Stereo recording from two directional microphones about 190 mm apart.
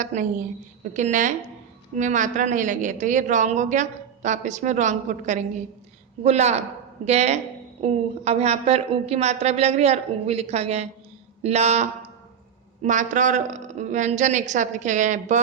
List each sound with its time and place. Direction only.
0.0 s a woman's voice: 40° right (ahead or behind)